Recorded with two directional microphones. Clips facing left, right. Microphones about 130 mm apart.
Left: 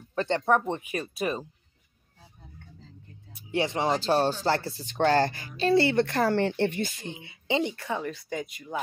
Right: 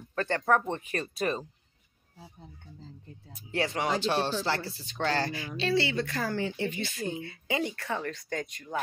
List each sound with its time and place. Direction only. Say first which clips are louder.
0.1 s speech: left 2 dB; 20° left (ahead or behind)
3.5 s speech: left 3 dB; 25° left (ahead or behind)
4.0 s a woman's voice: left 4 dB; 40° left (ahead or behind); by 6.8 s 70° left (ahead or behind)
7.2 s speech: left 8 dB; 20° left (ahead or behind)